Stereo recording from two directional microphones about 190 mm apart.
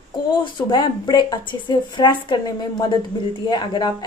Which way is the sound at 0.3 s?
25° left (ahead or behind).